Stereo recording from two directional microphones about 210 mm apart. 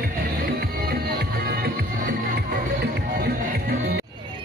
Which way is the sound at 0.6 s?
45° right (ahead or behind).